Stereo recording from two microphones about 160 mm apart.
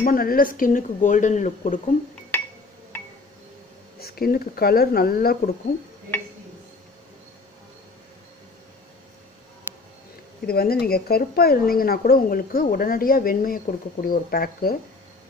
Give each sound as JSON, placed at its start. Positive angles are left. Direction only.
{"t": 0.0, "sound": "speech", "side_deg": 65}
{"t": 4.0, "sound": "speech", "side_deg": 70}
{"t": 10.4, "sound": "speech", "side_deg": 70}